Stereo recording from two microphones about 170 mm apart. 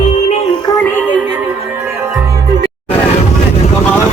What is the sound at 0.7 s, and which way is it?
Music, 25° left (ahead or behind).